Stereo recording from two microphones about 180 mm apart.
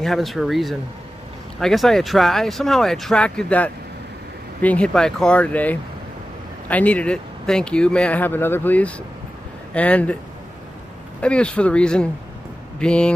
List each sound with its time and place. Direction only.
0.0 s speech: centre (ahead or behind)
11.1 s speech: 5° left (ahead or behind)